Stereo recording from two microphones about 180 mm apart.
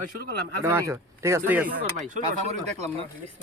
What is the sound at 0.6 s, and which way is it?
Speech, 15° right (ahead or behind).